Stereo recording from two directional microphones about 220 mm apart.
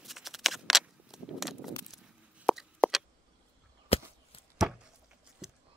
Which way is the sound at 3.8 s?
25° left (ahead or behind).